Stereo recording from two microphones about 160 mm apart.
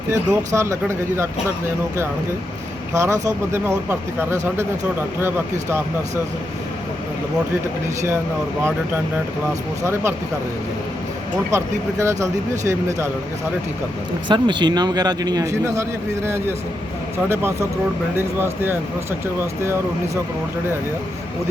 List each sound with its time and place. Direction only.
0.1 s speech: 15° right (ahead or behind)
9.8 s speech: 15° right (ahead or behind)
11.5 s speech: 20° right (ahead or behind)
14.3 s a man's voice: 30° right (ahead or behind); by 18.8 s 15° right (ahead or behind)